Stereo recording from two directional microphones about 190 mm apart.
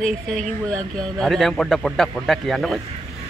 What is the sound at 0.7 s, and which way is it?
Speech, 5° left (ahead or behind).